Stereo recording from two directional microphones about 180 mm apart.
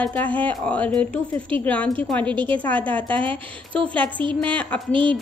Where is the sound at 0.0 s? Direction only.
10° left (ahead or behind).